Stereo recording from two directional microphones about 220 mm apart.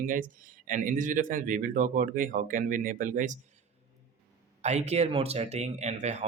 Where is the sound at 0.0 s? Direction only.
35° right (ahead or behind).